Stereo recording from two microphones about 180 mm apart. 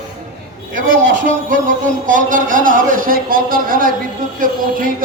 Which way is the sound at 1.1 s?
45° right (ahead or behind).